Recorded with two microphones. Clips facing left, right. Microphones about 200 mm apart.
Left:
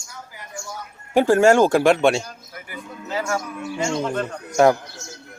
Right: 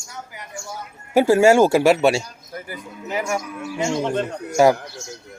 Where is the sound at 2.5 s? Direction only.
40° right (ahead or behind).